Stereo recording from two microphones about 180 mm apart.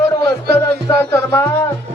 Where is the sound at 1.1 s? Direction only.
15° left (ahead or behind).